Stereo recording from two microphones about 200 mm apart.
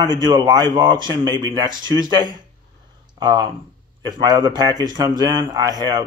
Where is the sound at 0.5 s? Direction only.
20° right (ahead or behind).